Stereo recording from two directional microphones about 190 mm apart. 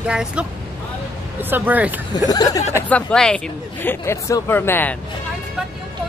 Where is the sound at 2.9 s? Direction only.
5° left (ahead or behind).